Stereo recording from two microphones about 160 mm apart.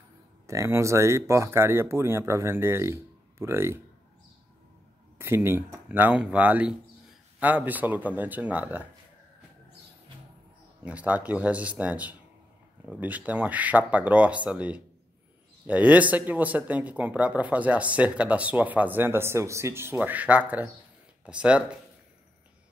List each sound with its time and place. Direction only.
0.5 s speech: 20° right (ahead or behind)
5.2 s speech: 15° right (ahead or behind)
10.8 s speech: 10° right (ahead or behind)